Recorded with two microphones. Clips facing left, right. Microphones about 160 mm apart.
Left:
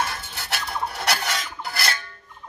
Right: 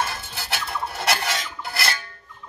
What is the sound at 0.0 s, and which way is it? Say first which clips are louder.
Fowl: even; 5° right (ahead or behind).